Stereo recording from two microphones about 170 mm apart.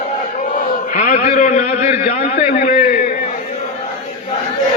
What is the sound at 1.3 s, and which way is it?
A man's voice, 45° left (ahead or behind).